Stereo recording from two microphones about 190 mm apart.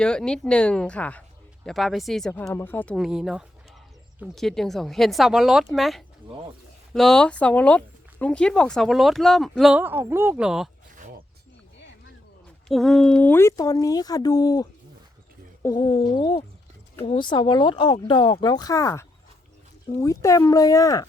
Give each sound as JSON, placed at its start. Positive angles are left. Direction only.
{"t": 0.0, "sound": "speech", "side_deg": 5}
{"t": 12.6, "sound": "speech", "side_deg": 0}